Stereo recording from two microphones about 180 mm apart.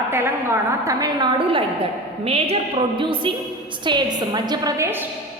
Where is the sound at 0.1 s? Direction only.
15° right (ahead or behind).